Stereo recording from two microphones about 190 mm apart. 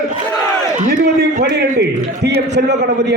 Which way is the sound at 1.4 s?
60° right (ahead or behind).